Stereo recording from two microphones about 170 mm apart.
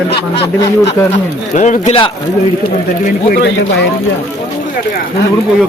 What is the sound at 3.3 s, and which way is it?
Speech, 80° left.